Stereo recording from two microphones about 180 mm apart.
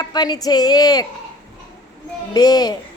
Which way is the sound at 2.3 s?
20° left (ahead or behind).